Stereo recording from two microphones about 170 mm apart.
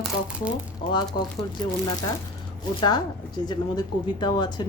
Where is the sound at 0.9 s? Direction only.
25° left (ahead or behind).